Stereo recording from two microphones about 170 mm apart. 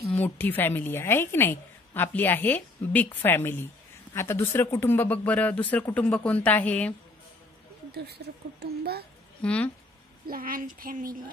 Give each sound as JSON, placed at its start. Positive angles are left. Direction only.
{"t": 0.0, "sound": "a woman's voice", "side_deg": 10}
{"t": 7.9, "sound": "speech", "side_deg": -75}
{"t": 9.4, "sound": "a woman's voice", "side_deg": 5}
{"t": 10.2, "sound": "speech", "side_deg": -55}